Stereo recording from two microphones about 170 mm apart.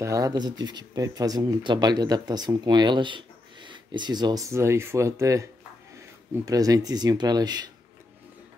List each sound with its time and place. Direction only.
0.0 s speech: 20° right (ahead or behind)